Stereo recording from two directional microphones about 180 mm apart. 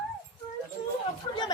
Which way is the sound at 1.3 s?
25° left (ahead or behind).